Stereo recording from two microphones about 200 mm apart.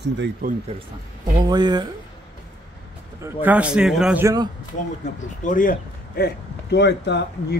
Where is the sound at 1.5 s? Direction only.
20° right (ahead or behind).